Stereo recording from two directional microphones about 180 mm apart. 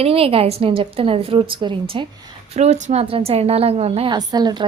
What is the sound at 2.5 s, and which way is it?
A woman's voice, 40° right (ahead or behind).